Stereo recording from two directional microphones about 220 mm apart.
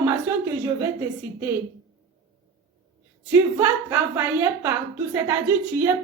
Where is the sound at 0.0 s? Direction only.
10° right (ahead or behind).